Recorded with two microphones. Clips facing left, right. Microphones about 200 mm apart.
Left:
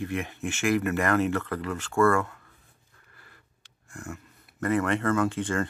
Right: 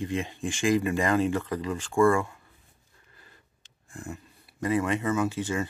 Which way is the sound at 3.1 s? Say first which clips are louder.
Even; 20° right (ahead or behind).